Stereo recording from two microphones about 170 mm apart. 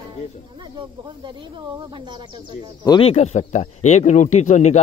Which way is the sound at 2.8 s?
30° left (ahead or behind).